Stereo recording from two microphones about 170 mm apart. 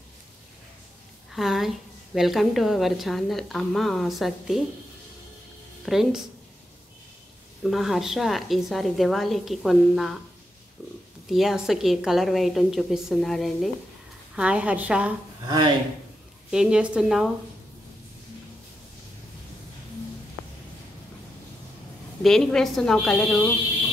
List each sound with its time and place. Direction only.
1.3 s a woman's voice: centre (ahead or behind)
5.9 s a woman's voice: centre (ahead or behind)
7.6 s a woman's voice: centre (ahead or behind)
11.2 s a woman's voice: centre (ahead or behind)
15.4 s speech: 25° right (ahead or behind)
16.4 s a woman's voice: 5° right (ahead or behind)
22.2 s a woman's voice: 5° left (ahead or behind)